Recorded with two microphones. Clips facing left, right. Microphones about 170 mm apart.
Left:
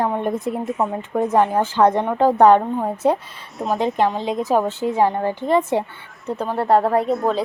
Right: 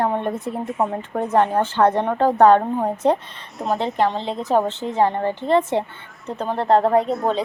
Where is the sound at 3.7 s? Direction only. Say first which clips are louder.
Left 2 dB; 15° left (ahead or behind).